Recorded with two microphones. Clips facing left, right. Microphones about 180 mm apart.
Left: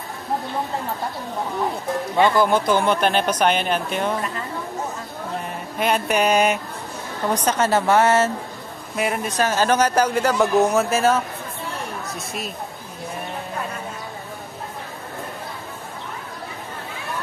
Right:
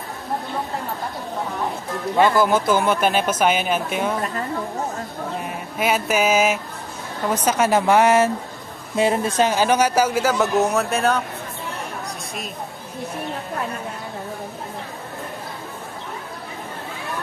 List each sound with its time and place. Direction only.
2.3 s speech: 5° right (ahead or behind)
5.8 s a woman's voice: 5° right (ahead or behind)
8.9 s a woman's voice: 30° right (ahead or behind)
9.5 s speech: 10° right (ahead or behind)